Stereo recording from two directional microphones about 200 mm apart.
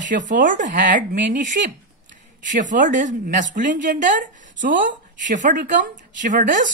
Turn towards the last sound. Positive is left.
turn(degrees=-40)  # may be behind; listen again after turning